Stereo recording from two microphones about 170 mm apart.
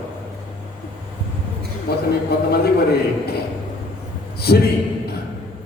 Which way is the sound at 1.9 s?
70° left (ahead or behind).